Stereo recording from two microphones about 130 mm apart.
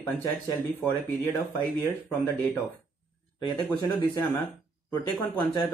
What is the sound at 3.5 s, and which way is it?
Speech, 30° left (ahead or behind).